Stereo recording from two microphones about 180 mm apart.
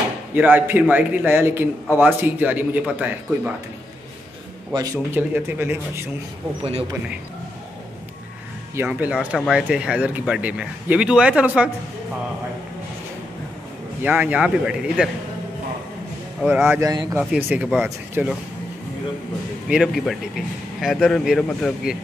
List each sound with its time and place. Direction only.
0.4 s speech: 10° right (ahead or behind)
4.7 s speech: 15° right (ahead or behind)
8.7 s speech: 10° right (ahead or behind)
14.0 s speech: 10° right (ahead or behind)
16.3 s a man's voice: centre (ahead or behind)
16.6 s speech: 15° right (ahead or behind)
17.2 s a man's voice: 10° right (ahead or behind)
19.7 s a man's voice: centre (ahead or behind)